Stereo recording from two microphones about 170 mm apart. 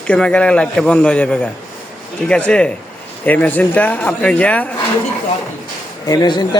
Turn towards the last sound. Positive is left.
turn(degrees=25)  # may be behind; listen again after turning